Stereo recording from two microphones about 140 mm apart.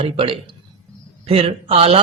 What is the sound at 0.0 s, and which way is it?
Speech, 40° right (ahead or behind).